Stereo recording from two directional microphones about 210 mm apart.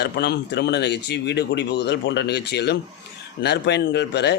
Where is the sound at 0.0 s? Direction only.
55° left (ahead or behind).